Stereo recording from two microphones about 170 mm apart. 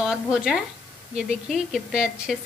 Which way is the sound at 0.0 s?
5° right (ahead or behind).